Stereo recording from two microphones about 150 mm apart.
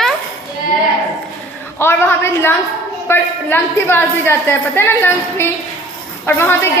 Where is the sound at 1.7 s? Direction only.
15° left (ahead or behind).